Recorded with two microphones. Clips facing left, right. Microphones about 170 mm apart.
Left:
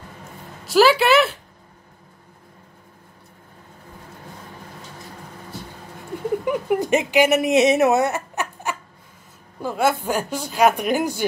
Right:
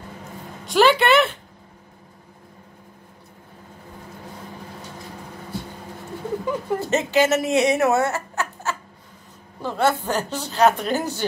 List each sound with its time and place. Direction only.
0.7 s speech: 5° left (ahead or behind)
6.4 s speech: 15° left (ahead or behind)